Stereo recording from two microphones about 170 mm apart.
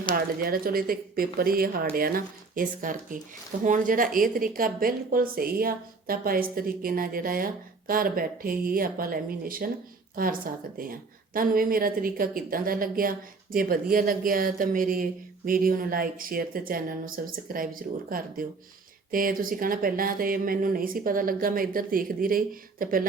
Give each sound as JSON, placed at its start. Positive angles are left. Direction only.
{"t": 0.1, "sound": "a woman's voice", "side_deg": -55}
{"t": 19.1, "sound": "a woman's voice", "side_deg": -55}